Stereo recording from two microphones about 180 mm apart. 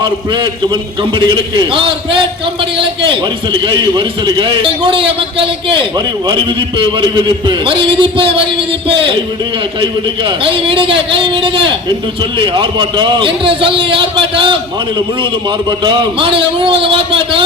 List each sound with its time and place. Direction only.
0.0 s a man's voice: 25° right (ahead or behind)
9.8 s a man's voice: 30° right (ahead or behind)